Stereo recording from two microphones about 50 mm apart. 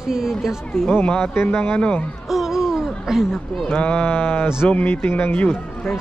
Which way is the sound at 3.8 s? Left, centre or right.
Left.